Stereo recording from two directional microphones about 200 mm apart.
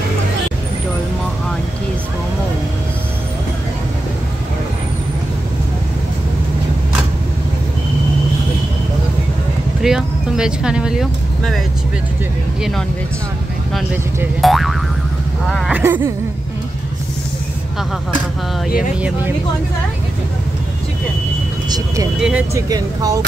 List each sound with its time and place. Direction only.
9.8 s vehicle: centre (ahead or behind)
14.4 s boing: centre (ahead or behind)
15.8 s speech: 10° right (ahead or behind)
18.9 s speech: 5° right (ahead or behind)
21.7 s speech: 15° right (ahead or behind)
22.7 s speech: 15° right (ahead or behind)